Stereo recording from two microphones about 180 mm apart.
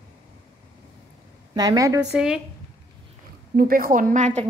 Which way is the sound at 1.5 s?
20° right (ahead or behind).